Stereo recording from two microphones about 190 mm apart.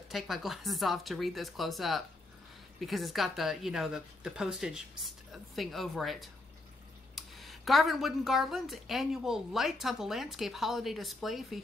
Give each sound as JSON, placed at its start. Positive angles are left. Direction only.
{"t": 0.1, "sound": "speech", "side_deg": 0}